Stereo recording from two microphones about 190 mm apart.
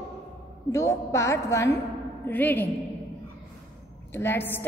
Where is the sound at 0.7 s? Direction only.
15° left (ahead or behind).